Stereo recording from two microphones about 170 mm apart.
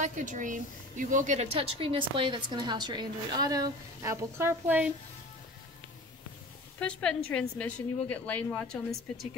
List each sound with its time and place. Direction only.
0.0 s a woman's voice: 50° right (ahead or behind); by 4.8 s 10° right (ahead or behind)
6.8 s a woman's voice: 5° left (ahead or behind)